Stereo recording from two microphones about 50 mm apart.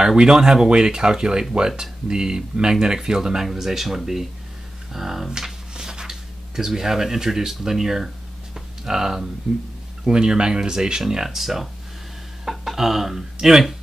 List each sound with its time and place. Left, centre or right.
0.0 s speech: centre
8.5 s a sound: centre
10.0 s speech: centre